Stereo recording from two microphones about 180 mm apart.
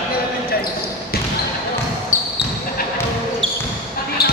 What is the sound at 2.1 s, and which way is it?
Basketball bounce, 45° left (ahead or behind).